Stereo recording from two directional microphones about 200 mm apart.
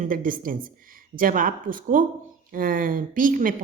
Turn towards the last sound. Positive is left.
turn(degrees=-45)  # may be behind; listen again after turning